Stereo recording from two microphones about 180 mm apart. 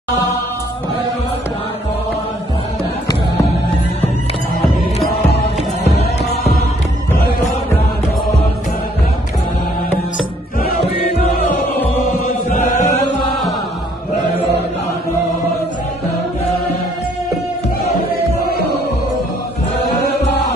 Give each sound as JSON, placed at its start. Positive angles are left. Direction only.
{"t": 5.9, "sound": "music", "side_deg": 35}
{"t": 12.5, "sound": "chant", "side_deg": 45}